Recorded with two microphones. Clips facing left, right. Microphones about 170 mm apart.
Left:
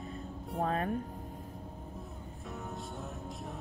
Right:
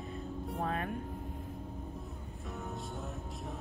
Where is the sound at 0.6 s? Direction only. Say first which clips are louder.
Left 5 dB; 35° left (ahead or behind).